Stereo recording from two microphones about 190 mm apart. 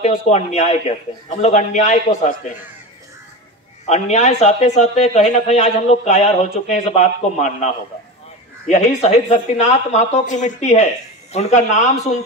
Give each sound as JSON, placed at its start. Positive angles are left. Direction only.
{"t": 0.0, "sound": "speech", "side_deg": 35}
{"t": 3.8, "sound": "speech", "side_deg": 35}